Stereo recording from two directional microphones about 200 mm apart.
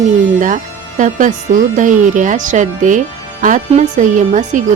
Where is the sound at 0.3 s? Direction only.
40° right (ahead or behind).